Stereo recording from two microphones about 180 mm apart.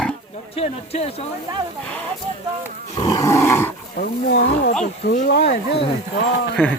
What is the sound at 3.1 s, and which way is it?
Roar, 15° left (ahead or behind).